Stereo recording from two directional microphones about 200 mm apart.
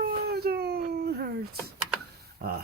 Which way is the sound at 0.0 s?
50° right (ahead or behind).